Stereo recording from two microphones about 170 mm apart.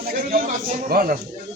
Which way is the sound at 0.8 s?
60° right (ahead or behind).